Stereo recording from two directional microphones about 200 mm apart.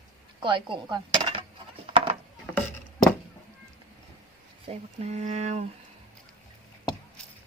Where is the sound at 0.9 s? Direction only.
20° right (ahead or behind).